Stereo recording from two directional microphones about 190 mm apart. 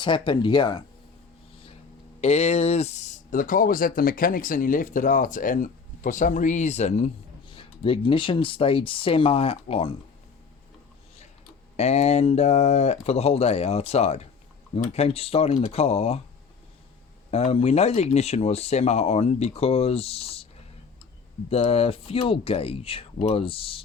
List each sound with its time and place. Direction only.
0.0 s speech: 25° left (ahead or behind)
2.2 s speech: 35° left (ahead or behind)
11.8 s speech: 35° left (ahead or behind)
17.3 s speech: 30° left (ahead or behind)
21.5 s speech: 35° left (ahead or behind)